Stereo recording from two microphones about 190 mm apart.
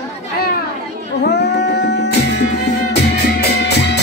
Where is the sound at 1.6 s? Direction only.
60° left (ahead or behind).